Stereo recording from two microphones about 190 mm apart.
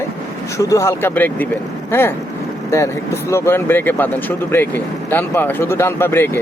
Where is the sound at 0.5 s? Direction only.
15° left (ahead or behind).